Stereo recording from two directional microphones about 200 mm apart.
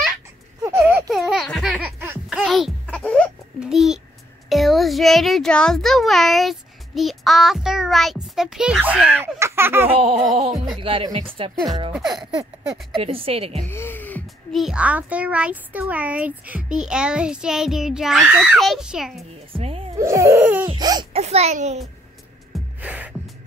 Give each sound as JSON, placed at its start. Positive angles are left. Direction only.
{"t": 0.6, "sound": "a sound", "side_deg": -15}
{"t": 4.5, "sound": "a child's voice", "side_deg": 0}
{"t": 9.8, "sound": "music", "side_deg": -30}
{"t": 13.7, "sound": "a child's voice", "side_deg": 10}
{"t": 19.5, "sound": "music", "side_deg": -30}
{"t": 20.0, "sound": "baby cry", "side_deg": -15}
{"t": 20.6, "sound": "a child's voice", "side_deg": -20}
{"t": 22.8, "sound": "music", "side_deg": -10}